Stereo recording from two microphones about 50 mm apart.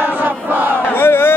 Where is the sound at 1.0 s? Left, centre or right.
Left.